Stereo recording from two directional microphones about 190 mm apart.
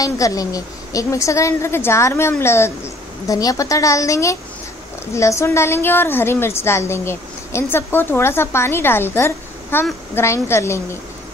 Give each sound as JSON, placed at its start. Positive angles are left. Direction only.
{"t": 0.0, "sound": "a woman's voice", "side_deg": 20}